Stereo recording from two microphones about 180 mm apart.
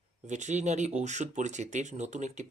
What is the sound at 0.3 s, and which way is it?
Speech, 40° right (ahead or behind).